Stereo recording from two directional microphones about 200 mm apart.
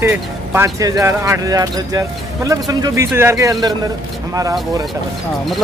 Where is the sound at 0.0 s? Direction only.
10° right (ahead or behind).